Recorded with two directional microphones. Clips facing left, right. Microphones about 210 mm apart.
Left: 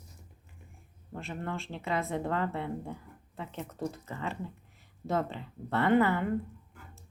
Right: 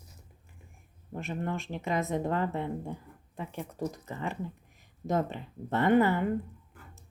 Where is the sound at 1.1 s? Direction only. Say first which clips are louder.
Right 3 dB; 20° right (ahead or behind).